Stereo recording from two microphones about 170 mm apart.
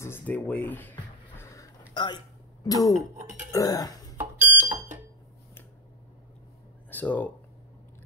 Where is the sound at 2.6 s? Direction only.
20° left (ahead or behind).